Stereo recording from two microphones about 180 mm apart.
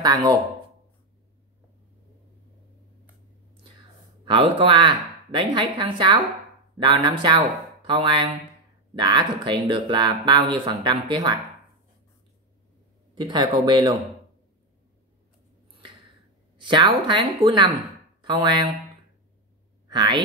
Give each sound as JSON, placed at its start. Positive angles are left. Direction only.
{"t": 0.0, "sound": "speech", "side_deg": -20}
{"t": 4.2, "sound": "speech", "side_deg": -30}
{"t": 13.1, "sound": "speech", "side_deg": -25}
{"t": 16.5, "sound": "speech", "side_deg": -25}
{"t": 19.9, "sound": "speech", "side_deg": -25}